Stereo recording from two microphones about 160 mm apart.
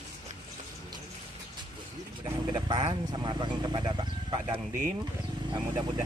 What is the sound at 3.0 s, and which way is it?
Speech, 25° right (ahead or behind).